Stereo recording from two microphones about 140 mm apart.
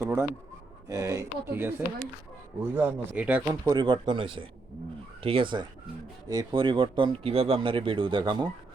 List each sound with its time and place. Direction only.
0.0 s a sound: 20° right (ahead or behind)
0.9 s speech: 25° right (ahead or behind)
3.4 s speech: 20° right (ahead or behind)